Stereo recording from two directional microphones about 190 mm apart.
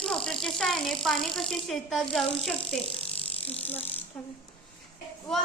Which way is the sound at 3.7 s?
10° left (ahead or behind).